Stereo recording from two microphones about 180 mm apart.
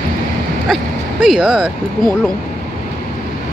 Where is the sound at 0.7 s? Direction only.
Centre (ahead or behind).